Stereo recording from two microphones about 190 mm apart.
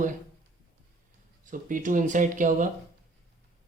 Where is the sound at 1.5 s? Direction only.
45° right (ahead or behind).